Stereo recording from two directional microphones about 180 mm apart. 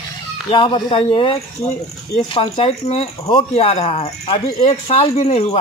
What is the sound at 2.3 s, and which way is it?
Speech, 35° left (ahead or behind).